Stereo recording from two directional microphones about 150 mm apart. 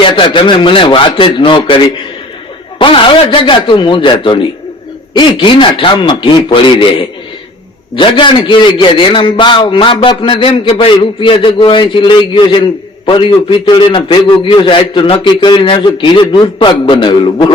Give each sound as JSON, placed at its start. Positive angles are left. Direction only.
{"t": 0.0, "sound": "a man's voice", "side_deg": 35}
{"t": 2.7, "sound": "a man's voice", "side_deg": 35}
{"t": 7.9, "sound": "a man's voice", "side_deg": 35}